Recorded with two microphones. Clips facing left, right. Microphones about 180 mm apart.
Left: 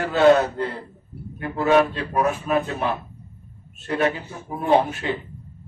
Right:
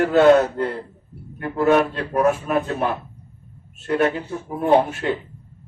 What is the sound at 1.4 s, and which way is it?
Speech, 50° right (ahead or behind).